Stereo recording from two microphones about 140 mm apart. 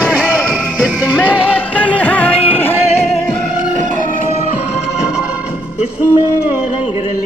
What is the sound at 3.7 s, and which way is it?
Music, 65° right (ahead or behind).